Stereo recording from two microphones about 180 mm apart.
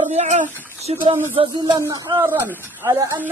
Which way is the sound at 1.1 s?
10° right (ahead or behind).